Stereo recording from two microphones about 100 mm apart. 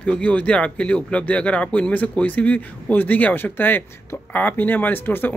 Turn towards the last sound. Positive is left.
turn(degrees=20)  # may be behind; listen again after turning